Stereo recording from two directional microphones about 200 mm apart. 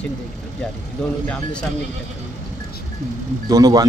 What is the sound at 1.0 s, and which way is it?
Speech, 5° left (ahead or behind).